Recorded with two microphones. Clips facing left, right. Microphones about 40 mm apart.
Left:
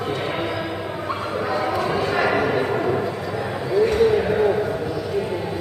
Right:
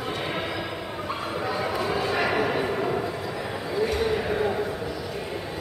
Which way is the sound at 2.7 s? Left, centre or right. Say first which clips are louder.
Left 5 dB; centre.